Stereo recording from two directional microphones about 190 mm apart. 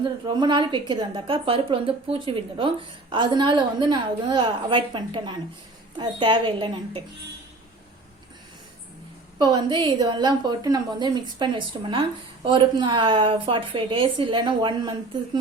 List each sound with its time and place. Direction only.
0.3 s a woman's voice: 25° right (ahead or behind)
9.4 s a woman's voice: 20° right (ahead or behind)